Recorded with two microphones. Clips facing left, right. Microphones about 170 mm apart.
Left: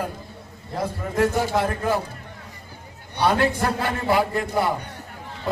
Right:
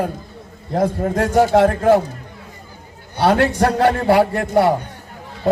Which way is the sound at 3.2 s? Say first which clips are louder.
Right 5 dB; 75° right (ahead or behind).